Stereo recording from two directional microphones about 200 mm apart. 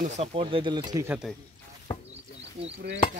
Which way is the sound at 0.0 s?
30° right (ahead or behind).